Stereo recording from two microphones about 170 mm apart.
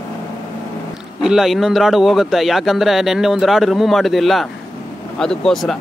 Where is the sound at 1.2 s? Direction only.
Centre (ahead or behind).